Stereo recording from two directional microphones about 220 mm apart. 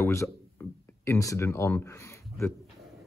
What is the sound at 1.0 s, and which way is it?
Speech, 15° left (ahead or behind).